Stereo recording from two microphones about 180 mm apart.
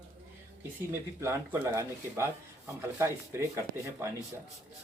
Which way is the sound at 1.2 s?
15° right (ahead or behind).